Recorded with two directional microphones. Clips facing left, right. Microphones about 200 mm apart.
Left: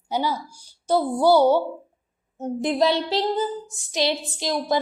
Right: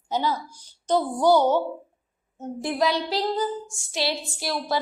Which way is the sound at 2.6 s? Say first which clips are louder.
Left 3 dB; 25° left (ahead or behind).